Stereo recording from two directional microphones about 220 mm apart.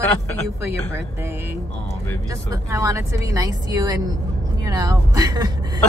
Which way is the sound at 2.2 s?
15° right (ahead or behind).